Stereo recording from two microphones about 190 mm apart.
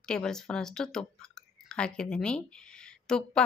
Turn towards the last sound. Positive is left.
turn(degrees=5)  # may be behind; listen again after turning